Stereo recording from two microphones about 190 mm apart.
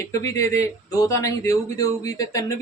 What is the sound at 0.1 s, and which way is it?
Speech, 15° left (ahead or behind).